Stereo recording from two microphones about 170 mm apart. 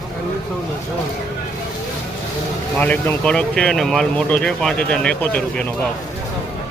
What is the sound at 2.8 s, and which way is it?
Speech, 10° left (ahead or behind).